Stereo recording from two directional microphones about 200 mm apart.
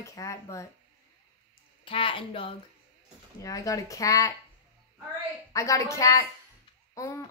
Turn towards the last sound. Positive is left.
turn(degrees=15)  # may be behind; listen again after turning